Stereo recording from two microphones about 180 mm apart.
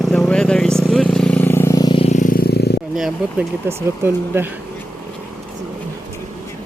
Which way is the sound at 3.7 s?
15° right (ahead or behind).